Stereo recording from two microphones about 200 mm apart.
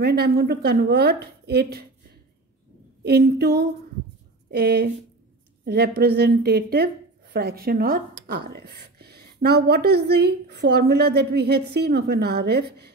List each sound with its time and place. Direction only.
0.0 s a woman's voice: 55° right (ahead or behind)
3.0 s a woman's voice: 50° right (ahead or behind)